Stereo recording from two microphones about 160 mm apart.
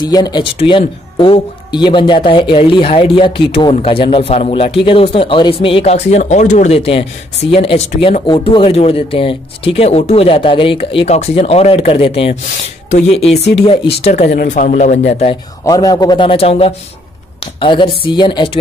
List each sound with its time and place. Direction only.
0.0 s a man's voice: 25° left (ahead or behind); by 14.3 s 45° left (ahead or behind)
14.3 s a man's voice: 60° left (ahead or behind); by 15.3 s 45° left (ahead or behind)
15.6 s a man's voice: 20° left (ahead or behind)